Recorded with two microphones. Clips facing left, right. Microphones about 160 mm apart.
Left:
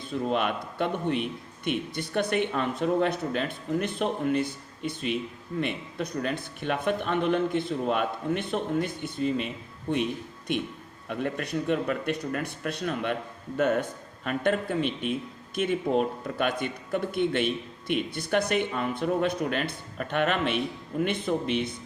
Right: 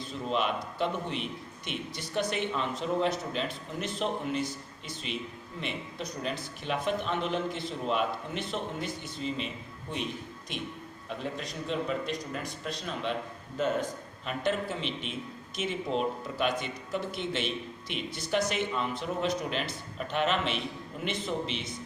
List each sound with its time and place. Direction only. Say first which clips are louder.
0.1 s a man's voice: left 4 dB; 55° left (ahead or behind)
11.1 s a man's voice: left 7 dB; 60° left (ahead or behind)
14.3 s a man's voice: left 4 dB; 55° left (ahead or behind)